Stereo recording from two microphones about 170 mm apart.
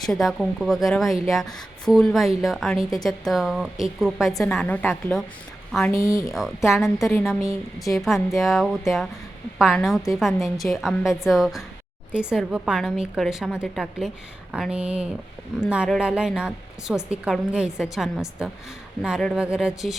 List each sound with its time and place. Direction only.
0.0 s a woman's voice: centre (ahead or behind); by 6.2 s 20° left (ahead or behind)
6.2 s a woman's voice: centre (ahead or behind)